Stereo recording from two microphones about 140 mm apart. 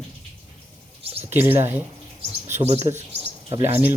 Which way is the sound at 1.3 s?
15° right (ahead or behind).